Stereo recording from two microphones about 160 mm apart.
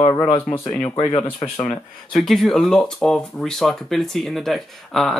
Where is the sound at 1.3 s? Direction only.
35° left (ahead or behind).